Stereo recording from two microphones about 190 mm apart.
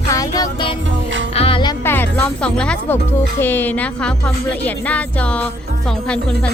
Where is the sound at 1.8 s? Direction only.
10° left (ahead or behind).